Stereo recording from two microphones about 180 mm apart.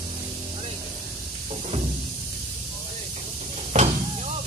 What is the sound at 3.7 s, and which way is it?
Vehicle, 40° right (ahead or behind).